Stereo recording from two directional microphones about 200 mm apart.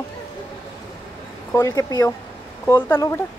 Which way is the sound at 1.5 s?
15° left (ahead or behind).